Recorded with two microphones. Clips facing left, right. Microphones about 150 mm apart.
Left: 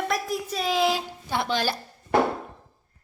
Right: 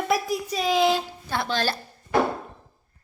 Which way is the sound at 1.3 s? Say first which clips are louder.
Left 1 dB; 15° left (ahead or behind).